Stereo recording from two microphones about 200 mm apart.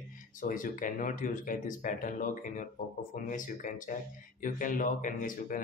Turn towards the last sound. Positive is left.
turn(degrees=45)  # may be behind; listen again after turning